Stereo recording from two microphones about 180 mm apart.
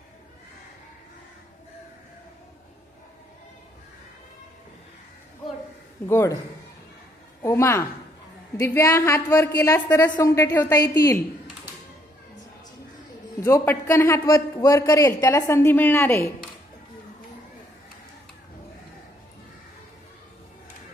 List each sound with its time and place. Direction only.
6.0 s a man's voice: 15° left (ahead or behind)
7.4 s a man's voice: 15° left (ahead or behind)
13.4 s a man's voice: 15° left (ahead or behind)